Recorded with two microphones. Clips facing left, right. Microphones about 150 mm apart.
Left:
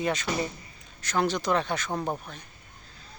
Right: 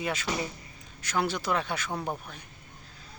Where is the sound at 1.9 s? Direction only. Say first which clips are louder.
Left 3 dB; 15° left (ahead or behind).